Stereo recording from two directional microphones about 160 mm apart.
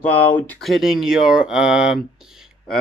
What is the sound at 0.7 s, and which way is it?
Speech, 5° right (ahead or behind).